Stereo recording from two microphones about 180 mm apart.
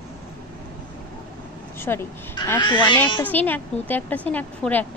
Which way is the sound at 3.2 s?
10° left (ahead or behind).